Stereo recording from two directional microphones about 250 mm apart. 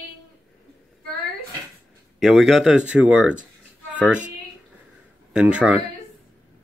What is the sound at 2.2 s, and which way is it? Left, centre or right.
Speech, centre.